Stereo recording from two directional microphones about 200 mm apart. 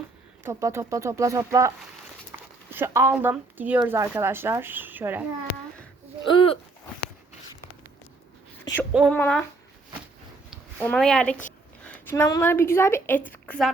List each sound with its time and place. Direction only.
0.4 s speech: 15° right (ahead or behind)
6.3 s speech: 25° left (ahead or behind)
8.6 s a sound: 10° left (ahead or behind)
8.9 s speech: 5° right (ahead or behind)
9.1 s speech: 10° left (ahead or behind)
10.8 s a woman's voice: 5° left (ahead or behind)